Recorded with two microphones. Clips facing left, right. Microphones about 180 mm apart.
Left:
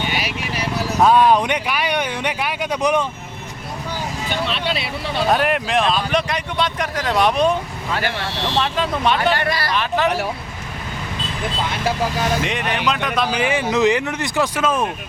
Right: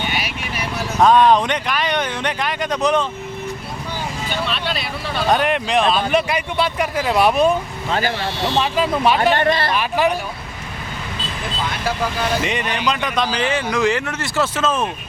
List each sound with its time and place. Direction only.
0.1 s vehicle: 35° left (ahead or behind)
0.9 s speech: 5° left (ahead or behind)
4.3 s speech: 20° left (ahead or behind)
5.2 s speech: centre (ahead or behind)
8.5 s speech: 5° right (ahead or behind)
9.4 s speech: 25° right (ahead or behind)
9.7 s speech: 10° right (ahead or behind)
10.1 s speech: 75° left (ahead or behind)
12.4 s speech: centre (ahead or behind)